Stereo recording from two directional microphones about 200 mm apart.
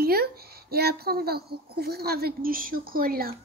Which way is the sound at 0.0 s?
50° right (ahead or behind).